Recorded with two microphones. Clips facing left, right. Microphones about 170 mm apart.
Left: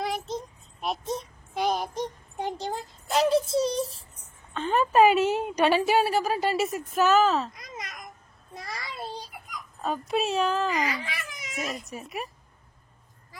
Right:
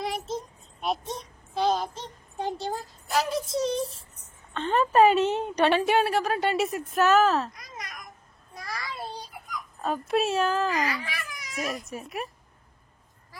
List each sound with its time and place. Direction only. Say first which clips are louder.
0.0 s child singing: even; centre (ahead or behind)
1.5 s a sound: right 2 dB; 15° left (ahead or behind); by 3.7 s 30° left (ahead or behind)
4.6 s a woman's voice: even; 5° left (ahead or behind)
7.5 s babbling: left 1 dB; 20° left (ahead or behind)
8.5 s child singing: right 1 dB; 25° left (ahead or behind)
9.8 s speech: right 2 dB; centre (ahead or behind)
10.8 s a sound: even; 20° left (ahead or behind)
11.9 s speech: right 1 dB; centre (ahead or behind)